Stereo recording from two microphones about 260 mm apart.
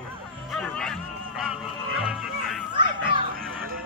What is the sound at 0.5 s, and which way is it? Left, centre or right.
Music, centre.